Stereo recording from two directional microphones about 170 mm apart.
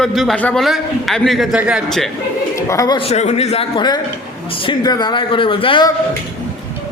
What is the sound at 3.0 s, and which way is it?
A man's voice, 40° left (ahead or behind).